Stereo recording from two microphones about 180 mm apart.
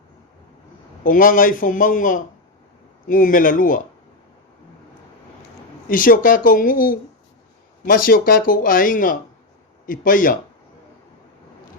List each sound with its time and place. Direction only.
1.0 s speech: 50° left (ahead or behind)
5.9 s speech: 50° left (ahead or behind)